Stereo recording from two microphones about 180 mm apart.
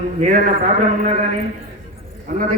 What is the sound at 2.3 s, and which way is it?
Speech, 40° right (ahead or behind).